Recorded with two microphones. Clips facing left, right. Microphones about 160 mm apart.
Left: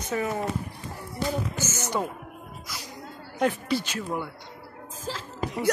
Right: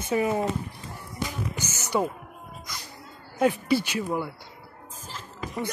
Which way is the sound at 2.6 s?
5° left (ahead or behind).